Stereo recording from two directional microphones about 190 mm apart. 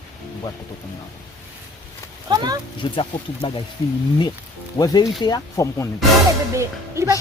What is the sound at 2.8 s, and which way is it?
Speech, 25° left (ahead or behind).